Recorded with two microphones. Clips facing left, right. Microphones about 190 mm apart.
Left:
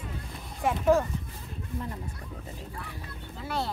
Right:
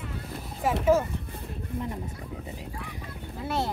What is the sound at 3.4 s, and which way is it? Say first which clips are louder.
Speech: right 3 dB; 20° right (ahead or behind).